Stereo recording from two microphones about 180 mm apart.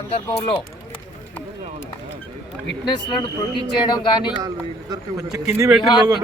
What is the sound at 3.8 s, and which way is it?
Speech, 25° left (ahead or behind).